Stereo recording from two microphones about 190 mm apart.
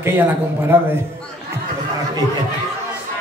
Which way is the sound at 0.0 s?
10° right (ahead or behind).